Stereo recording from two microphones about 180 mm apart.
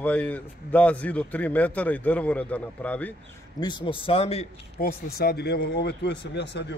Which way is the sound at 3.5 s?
25° left (ahead or behind).